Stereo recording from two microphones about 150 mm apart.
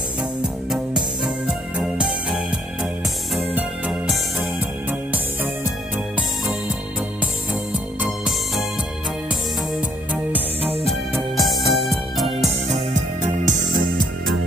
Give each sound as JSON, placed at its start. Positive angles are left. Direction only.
{"t": 0.7, "sound": "music", "side_deg": -5}
{"t": 8.0, "sound": "music", "side_deg": 0}
{"t": 9.8, "sound": "music", "side_deg": -10}
{"t": 13.5, "sound": "music", "side_deg": -65}